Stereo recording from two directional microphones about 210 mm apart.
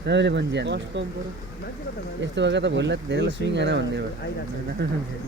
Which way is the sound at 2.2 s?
55° right (ahead or behind).